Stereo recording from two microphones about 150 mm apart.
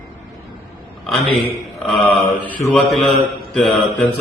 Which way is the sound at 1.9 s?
10° left (ahead or behind).